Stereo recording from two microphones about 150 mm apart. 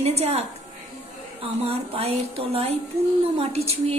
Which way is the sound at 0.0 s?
45° right (ahead or behind).